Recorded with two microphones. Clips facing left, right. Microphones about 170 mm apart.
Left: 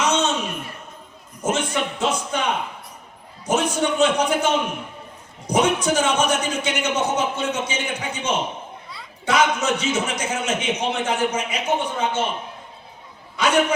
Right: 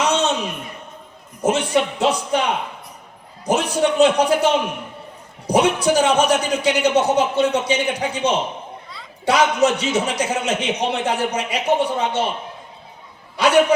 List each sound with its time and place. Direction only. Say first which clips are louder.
0.0 s a sound: right 2 dB; 35° right (ahead or behind)
1.4 s a man's voice: right 5 dB; 30° right (ahead or behind)
3.4 s a man's voice: right 3 dB; 35° right (ahead or behind)
5.5 s a man's voice: right 3 dB; 35° right (ahead or behind)
13.3 s a man's voice: right 5 dB; 35° right (ahead or behind)